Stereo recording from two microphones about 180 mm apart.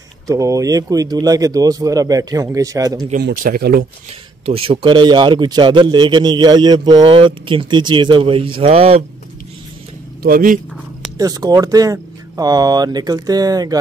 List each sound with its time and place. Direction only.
0.3 s a man's voice: 20° right (ahead or behind)
3.2 s speech: 55° right (ahead or behind)
4.5 s a man's voice: 30° right (ahead or behind)
10.2 s speech: 50° right (ahead or behind)
11.1 s a man's voice: 20° right (ahead or behind)